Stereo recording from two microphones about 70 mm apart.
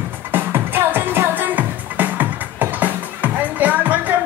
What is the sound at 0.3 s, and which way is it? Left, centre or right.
Music, right.